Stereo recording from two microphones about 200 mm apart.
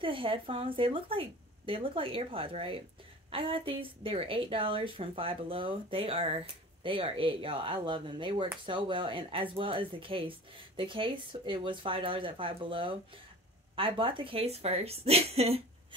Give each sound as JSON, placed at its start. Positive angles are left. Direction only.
{"t": 0.0, "sound": "a woman's voice", "side_deg": -25}